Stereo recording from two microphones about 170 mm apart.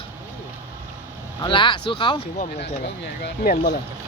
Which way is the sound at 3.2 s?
65° left (ahead or behind).